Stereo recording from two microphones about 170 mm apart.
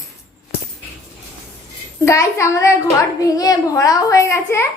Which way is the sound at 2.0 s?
15° left (ahead or behind).